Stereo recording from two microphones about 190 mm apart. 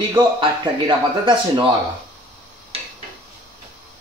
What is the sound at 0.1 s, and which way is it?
Speech, 25° right (ahead or behind).